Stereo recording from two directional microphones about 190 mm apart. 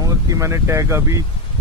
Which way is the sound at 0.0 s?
15° right (ahead or behind).